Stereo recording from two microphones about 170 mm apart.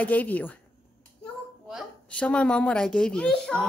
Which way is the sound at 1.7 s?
5° left (ahead or behind).